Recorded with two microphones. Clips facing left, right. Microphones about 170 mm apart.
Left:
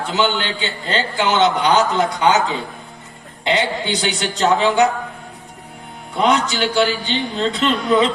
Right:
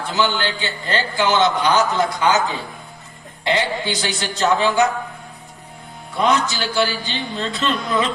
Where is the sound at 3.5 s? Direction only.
20° left (ahead or behind).